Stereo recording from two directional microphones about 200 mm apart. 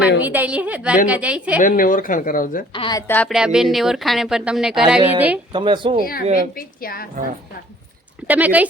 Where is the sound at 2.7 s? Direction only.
25° left (ahead or behind).